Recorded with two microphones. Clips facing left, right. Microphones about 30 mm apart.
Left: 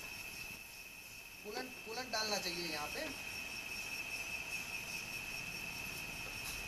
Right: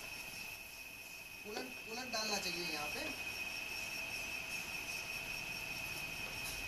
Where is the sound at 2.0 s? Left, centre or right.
Centre.